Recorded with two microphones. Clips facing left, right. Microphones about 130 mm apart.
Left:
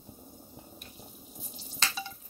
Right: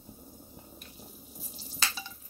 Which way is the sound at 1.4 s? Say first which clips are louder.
Left 1 dB; 5° right (ahead or behind).